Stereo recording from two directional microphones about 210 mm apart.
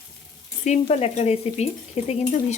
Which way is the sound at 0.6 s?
30° left (ahead or behind).